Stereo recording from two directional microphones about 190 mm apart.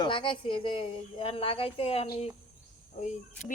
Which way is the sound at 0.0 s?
25° left (ahead or behind).